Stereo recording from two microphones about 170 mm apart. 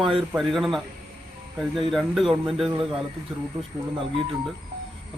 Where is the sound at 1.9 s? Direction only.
Centre (ahead or behind).